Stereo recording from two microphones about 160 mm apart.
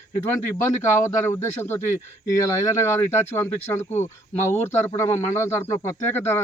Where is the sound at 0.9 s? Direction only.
15° left (ahead or behind).